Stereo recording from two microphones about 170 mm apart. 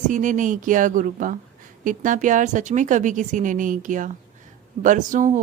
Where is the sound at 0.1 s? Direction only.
50° right (ahead or behind).